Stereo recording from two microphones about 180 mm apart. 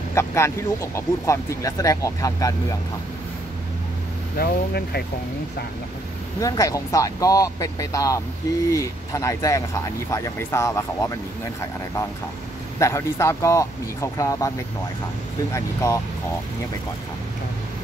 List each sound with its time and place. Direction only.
0.1 s speech: 15° left (ahead or behind)
4.4 s speech: 60° left (ahead or behind)
6.4 s speech: 20° left (ahead or behind)
12.7 s speech: 15° left (ahead or behind)
15.5 s speech: 20° left (ahead or behind)